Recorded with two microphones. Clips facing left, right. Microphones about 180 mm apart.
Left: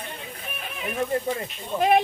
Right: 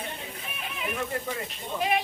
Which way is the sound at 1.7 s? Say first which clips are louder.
Left 7 dB; 50° left (ahead or behind).